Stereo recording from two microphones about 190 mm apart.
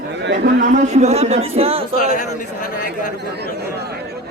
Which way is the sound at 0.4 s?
40° right (ahead or behind).